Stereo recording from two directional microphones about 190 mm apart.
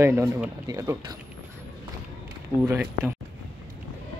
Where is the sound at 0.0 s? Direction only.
10° right (ahead or behind).